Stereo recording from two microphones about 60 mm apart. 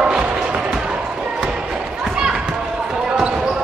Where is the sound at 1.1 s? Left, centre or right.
Centre.